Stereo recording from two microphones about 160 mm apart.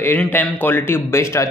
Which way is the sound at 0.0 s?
10° left (ahead or behind).